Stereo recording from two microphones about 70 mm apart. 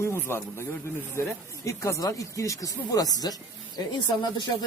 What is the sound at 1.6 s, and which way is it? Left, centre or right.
Speech, left.